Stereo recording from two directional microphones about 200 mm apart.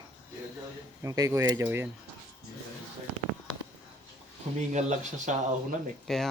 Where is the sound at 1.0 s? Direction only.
15° right (ahead or behind).